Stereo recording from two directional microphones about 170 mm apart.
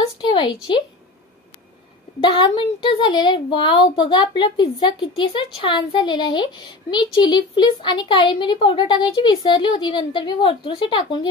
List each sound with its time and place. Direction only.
0.2 s a woman's voice: 30° left (ahead or behind)
2.1 s a woman's voice: 30° left (ahead or behind)